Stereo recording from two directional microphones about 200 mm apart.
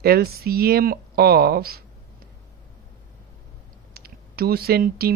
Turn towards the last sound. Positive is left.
turn(degrees=-50)  # may be behind; listen again after turning